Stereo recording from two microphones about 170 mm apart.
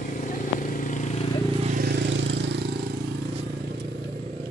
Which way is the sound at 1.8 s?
85° right.